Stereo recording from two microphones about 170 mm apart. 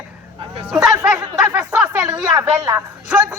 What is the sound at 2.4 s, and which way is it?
Speech, 15° right (ahead or behind).